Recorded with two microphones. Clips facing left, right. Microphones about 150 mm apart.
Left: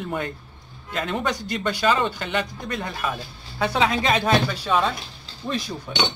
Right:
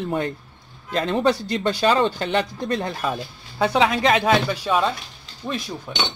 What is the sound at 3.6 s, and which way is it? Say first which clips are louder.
Speech: right 3 dB; 15° right (ahead or behind).